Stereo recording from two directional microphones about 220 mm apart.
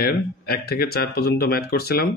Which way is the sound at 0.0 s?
45° left (ahead or behind).